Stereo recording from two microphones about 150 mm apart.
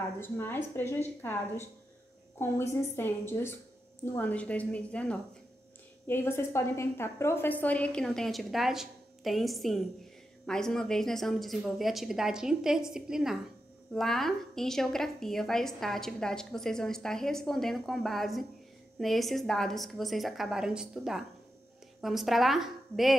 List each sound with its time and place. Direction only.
0.2 s a woman's voice: 15° left (ahead or behind); by 23.1 s centre (ahead or behind)